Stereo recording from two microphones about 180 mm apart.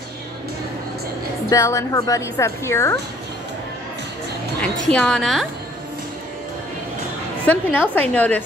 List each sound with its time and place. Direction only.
1.5 s a woman's voice: 15° left (ahead or behind)
4.8 s a woman's voice: 5° left (ahead or behind)
7.4 s a woman's voice: 10° left (ahead or behind)